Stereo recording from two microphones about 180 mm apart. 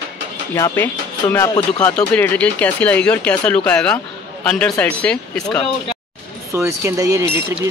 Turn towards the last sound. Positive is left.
turn(degrees=-15)  # may be behind; listen again after turning